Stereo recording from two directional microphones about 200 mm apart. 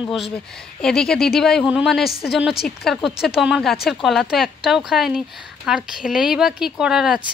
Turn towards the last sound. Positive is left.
turn(degrees=-5)  # may be behind; listen again after turning